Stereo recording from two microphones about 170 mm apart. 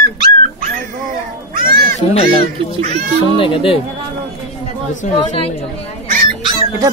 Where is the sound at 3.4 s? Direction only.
30° left (ahead or behind).